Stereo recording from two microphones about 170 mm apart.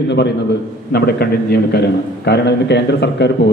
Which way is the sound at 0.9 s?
65° left (ahead or behind).